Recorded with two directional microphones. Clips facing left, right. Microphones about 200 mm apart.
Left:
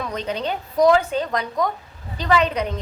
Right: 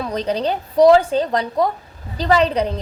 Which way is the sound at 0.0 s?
35° right (ahead or behind).